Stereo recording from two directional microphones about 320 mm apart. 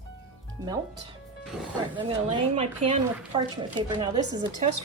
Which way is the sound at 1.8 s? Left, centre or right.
Centre.